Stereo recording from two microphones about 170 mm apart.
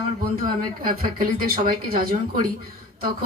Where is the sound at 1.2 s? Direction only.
60° right (ahead or behind).